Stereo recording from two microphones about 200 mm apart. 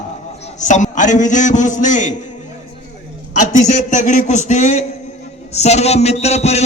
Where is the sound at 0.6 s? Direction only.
40° left (ahead or behind).